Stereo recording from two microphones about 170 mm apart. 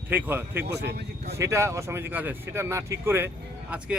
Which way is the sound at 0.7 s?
75° right (ahead or behind).